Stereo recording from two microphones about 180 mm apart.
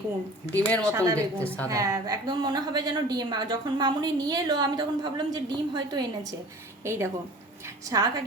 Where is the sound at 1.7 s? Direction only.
20° right (ahead or behind).